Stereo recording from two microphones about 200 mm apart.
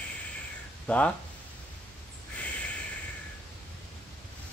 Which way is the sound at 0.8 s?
5° left (ahead or behind).